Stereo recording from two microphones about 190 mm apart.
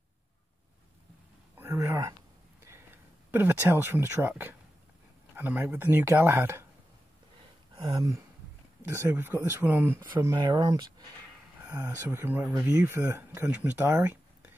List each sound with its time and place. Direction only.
1.6 s a sound: 15° right (ahead or behind)
2.6 s speech: 10° right (ahead or behind)
7.7 s speech: 25° right (ahead or behind)
10.1 s speech: 25° right (ahead or behind)